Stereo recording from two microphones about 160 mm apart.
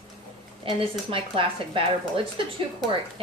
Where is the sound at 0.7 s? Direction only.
35° right (ahead or behind).